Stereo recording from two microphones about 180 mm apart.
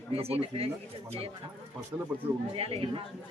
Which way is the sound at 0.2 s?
35° right (ahead or behind).